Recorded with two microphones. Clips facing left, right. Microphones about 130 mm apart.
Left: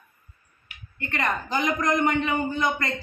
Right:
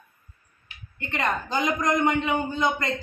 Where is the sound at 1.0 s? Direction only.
20° right (ahead or behind).